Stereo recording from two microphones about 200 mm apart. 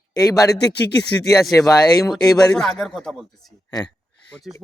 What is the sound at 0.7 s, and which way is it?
Speech, 55° left (ahead or behind).